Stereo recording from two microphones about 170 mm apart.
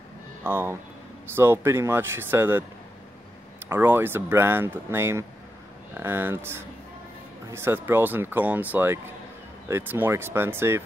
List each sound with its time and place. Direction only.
0.4 s speech: 15° right (ahead or behind)
3.6 s speech: 15° right (ahead or behind)